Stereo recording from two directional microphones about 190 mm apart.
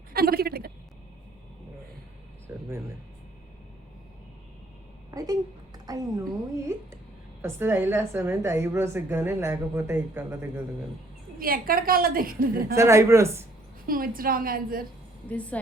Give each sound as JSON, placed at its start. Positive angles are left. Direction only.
{"t": 0.1, "sound": "a sound", "side_deg": -55}
{"t": 5.1, "sound": "a sound", "side_deg": -20}
{"t": 7.4, "sound": "a woman's voice", "side_deg": -10}
{"t": 11.3, "sound": "a woman's voice", "side_deg": -50}
{"t": 12.7, "sound": "a woman's voice", "side_deg": -15}
{"t": 13.8, "sound": "a woman's voice", "side_deg": -50}
{"t": 15.3, "sound": "a woman's voice", "side_deg": 5}